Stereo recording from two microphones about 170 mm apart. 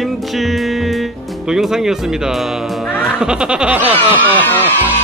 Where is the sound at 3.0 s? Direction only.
5° right (ahead or behind).